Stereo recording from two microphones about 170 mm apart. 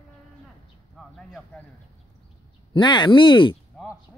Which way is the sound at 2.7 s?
25° left (ahead or behind).